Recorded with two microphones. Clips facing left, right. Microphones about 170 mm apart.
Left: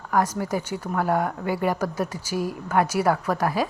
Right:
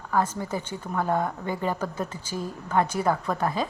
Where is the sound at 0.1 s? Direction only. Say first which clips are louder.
Left 3 dB; 10° left (ahead or behind).